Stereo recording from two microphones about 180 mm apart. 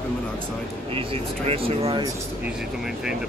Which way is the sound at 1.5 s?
30° right (ahead or behind).